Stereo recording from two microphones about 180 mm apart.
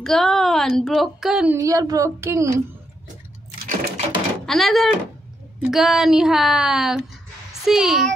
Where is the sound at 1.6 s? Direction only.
20° right (ahead or behind).